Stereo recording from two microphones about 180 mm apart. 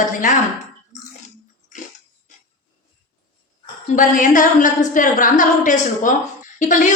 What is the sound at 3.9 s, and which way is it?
A woman's voice, 45° left (ahead or behind).